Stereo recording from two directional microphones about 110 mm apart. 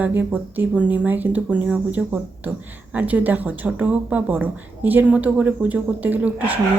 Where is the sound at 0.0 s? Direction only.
15° right (ahead or behind).